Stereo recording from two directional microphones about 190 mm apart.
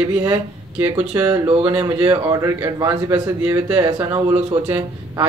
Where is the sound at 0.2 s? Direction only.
10° right (ahead or behind).